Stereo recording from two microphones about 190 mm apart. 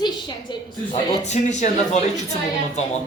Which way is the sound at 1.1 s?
35° left (ahead or behind).